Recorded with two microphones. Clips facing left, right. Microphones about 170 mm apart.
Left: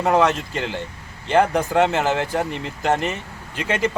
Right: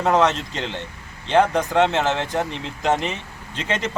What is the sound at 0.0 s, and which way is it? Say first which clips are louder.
Speech: left 1 dB; 5° left (ahead or behind).